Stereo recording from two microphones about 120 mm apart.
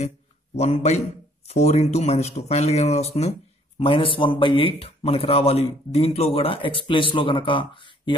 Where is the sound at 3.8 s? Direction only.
45° left (ahead or behind).